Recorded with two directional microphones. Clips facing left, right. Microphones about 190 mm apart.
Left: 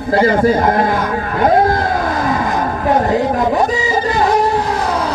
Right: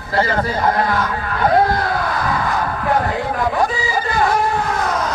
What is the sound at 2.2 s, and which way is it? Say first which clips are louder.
Vehicle: left 3 dB; 20° left (ahead or behind).